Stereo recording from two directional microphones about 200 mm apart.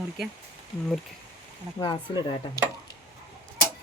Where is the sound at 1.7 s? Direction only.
20° left (ahead or behind).